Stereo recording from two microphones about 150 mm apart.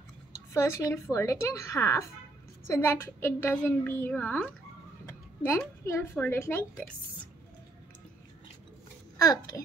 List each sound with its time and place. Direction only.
0.5 s a woman's voice: 20° left (ahead or behind)
5.0 s a sound: 20° left (ahead or behind)
6.1 s a woman's voice: 15° left (ahead or behind)
9.2 s a woman's voice: 25° left (ahead or behind)